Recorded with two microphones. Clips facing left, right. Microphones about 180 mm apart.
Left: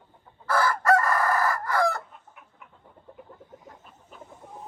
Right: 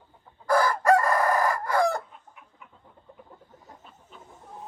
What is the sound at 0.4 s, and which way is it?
Chicken, 15° right (ahead or behind).